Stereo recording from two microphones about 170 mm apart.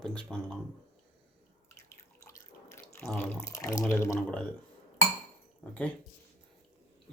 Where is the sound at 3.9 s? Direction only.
15° left (ahead or behind).